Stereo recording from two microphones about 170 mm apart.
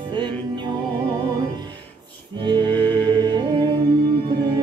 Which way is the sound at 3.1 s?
25° right (ahead or behind).